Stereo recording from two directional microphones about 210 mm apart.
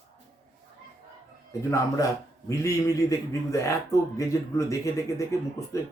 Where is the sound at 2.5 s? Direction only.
15° left (ahead or behind).